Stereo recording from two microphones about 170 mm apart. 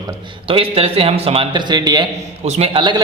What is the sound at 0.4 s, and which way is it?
A man's voice, 35° right (ahead or behind).